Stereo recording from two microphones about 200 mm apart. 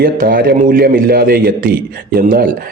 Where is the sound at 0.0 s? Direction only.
45° right (ahead or behind).